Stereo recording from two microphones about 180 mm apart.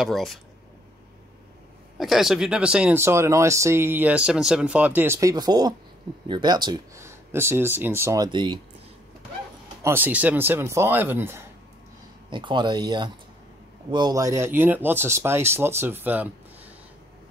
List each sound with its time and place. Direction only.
0.0 s speech: centre (ahead or behind)
2.0 s speech: centre (ahead or behind); by 8.5 s 25° right (ahead or behind)
9.8 s speech: 10° right (ahead or behind)
12.3 s speech: 25° right (ahead or behind); by 16.7 s 10° right (ahead or behind)